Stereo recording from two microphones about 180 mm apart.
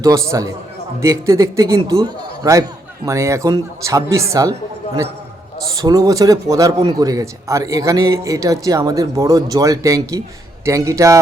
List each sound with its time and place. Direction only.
0.0 s a man's voice: 15° right (ahead or behind)
5.8 s a man's voice: 20° right (ahead or behind)